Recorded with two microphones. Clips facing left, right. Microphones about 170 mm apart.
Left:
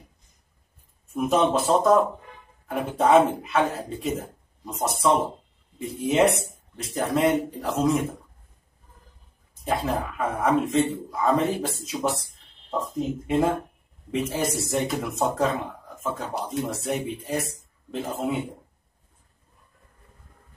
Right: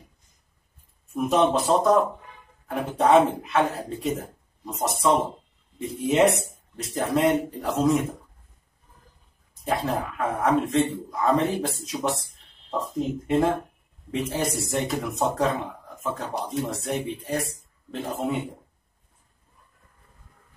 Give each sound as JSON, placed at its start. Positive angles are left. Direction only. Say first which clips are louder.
{"t": 1.0, "sound": "speech", "louder": "even", "side_deg": 0}
{"t": 9.7, "sound": "speech", "louder": "even", "side_deg": 0}